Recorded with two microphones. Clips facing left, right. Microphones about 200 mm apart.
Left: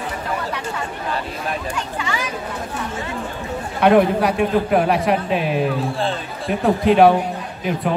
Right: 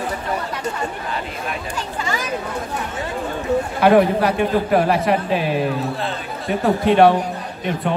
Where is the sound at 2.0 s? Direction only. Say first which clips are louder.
Right 3 dB; 40° right (ahead or behind).